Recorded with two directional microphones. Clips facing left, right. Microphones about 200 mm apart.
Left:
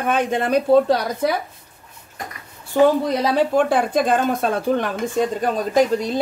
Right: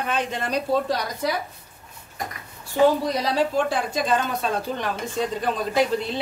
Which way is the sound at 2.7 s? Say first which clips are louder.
Left 3 dB; 55° left (ahead or behind).